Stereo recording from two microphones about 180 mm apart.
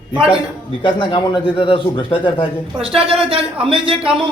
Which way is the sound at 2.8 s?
30° right (ahead or behind).